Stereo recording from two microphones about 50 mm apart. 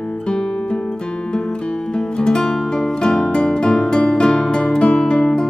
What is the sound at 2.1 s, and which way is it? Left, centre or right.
Music, centre.